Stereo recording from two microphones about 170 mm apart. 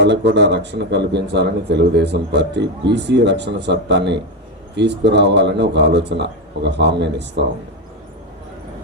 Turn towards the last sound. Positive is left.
turn(degrees=-90)